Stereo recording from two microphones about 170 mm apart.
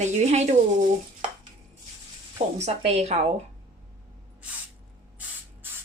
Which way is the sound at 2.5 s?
40° right (ahead or behind).